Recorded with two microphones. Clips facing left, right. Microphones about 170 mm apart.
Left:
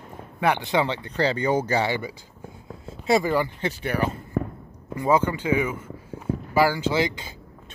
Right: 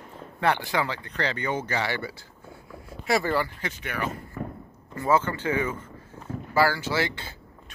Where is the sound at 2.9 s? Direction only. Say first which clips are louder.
Left 4 dB; 20° left (ahead or behind).